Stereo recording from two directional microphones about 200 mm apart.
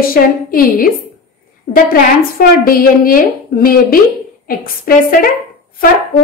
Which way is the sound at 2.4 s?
45° left (ahead or behind).